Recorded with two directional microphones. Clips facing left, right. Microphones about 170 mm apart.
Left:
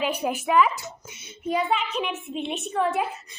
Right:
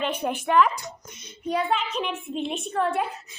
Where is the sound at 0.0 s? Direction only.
5° left (ahead or behind).